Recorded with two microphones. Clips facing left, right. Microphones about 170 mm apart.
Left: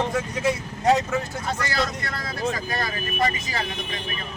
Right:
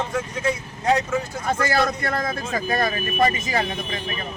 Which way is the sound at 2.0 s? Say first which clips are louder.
Right 2 dB; 50° right (ahead or behind).